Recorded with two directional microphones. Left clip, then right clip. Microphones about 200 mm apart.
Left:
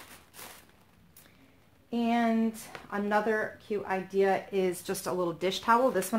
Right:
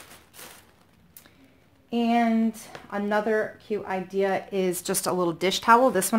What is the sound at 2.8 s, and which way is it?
Speech, 25° right (ahead or behind).